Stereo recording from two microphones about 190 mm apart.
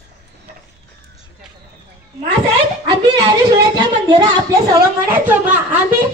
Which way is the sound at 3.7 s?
25° right (ahead or behind).